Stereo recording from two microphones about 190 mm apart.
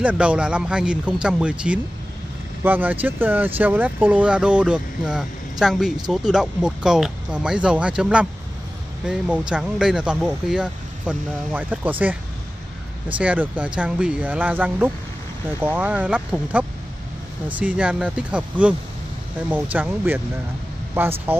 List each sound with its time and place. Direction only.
0.0 s speech: 5° right (ahead or behind)
13.2 s speech: 10° right (ahead or behind)